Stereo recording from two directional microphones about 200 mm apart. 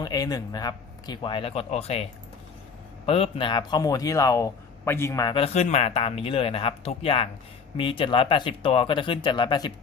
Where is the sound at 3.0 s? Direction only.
30° left (ahead or behind).